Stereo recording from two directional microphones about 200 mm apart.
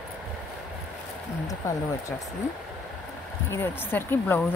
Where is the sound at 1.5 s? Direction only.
15° left (ahead or behind).